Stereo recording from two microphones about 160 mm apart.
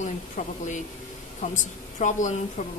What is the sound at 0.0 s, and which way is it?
Speech, 50° left (ahead or behind).